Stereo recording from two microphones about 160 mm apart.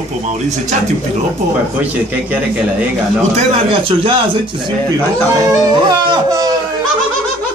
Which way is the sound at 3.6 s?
35° right (ahead or behind).